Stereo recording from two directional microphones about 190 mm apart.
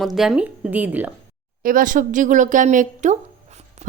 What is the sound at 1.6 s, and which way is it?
Speech, 45° right (ahead or behind).